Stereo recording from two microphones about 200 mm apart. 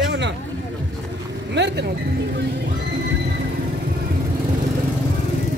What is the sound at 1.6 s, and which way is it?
Speech, 60° right (ahead or behind).